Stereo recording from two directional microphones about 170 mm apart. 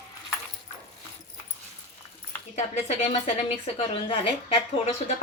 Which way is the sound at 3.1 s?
35° left (ahead or behind).